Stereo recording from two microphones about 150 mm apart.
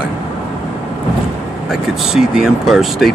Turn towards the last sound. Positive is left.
turn(degrees=0)  # may be behind; listen again after turning